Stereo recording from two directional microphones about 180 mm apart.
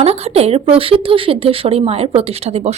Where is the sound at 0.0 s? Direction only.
35° right (ahead or behind).